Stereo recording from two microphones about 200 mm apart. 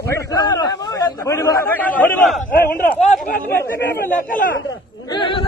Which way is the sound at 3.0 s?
35° left (ahead or behind).